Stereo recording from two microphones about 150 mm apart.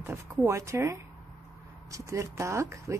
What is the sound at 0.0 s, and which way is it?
Speech, 20° right (ahead or behind).